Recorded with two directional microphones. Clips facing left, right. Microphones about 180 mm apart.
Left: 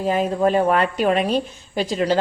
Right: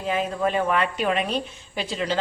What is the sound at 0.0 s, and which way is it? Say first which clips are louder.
A woman's voice: left 5 dB; 40° left (ahead or behind).